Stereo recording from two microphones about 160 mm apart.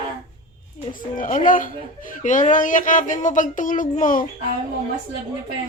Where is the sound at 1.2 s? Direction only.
55° left (ahead or behind).